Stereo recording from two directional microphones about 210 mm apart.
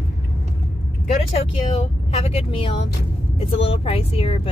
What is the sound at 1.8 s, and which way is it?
Speech, 30° left (ahead or behind).